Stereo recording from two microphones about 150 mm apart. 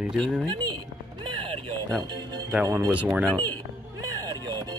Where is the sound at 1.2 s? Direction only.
35° right (ahead or behind).